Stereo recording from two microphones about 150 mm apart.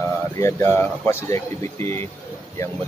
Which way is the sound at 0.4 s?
15° left (ahead or behind).